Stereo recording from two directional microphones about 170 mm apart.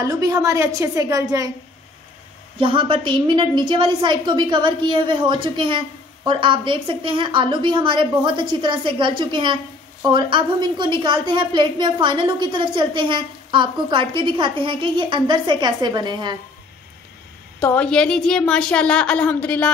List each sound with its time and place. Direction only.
0.0 s a woman's voice: 20° right (ahead or behind)
2.6 s a woman's voice: 30° right (ahead or behind)
17.6 s speech: 10° left (ahead or behind)